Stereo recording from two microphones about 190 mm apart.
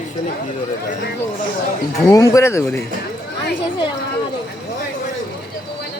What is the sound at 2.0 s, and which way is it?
Speech, 15° left (ahead or behind).